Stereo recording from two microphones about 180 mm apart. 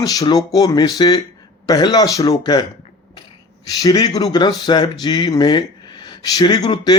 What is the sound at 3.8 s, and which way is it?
Speech, 20° left (ahead or behind).